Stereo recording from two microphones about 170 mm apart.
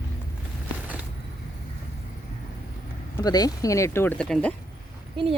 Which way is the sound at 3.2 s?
25° left (ahead or behind).